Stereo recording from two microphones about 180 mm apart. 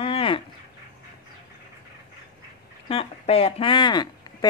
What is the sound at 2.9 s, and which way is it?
Speech, 35° left (ahead or behind).